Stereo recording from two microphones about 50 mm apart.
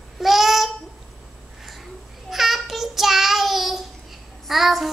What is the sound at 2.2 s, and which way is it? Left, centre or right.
Child singing, centre.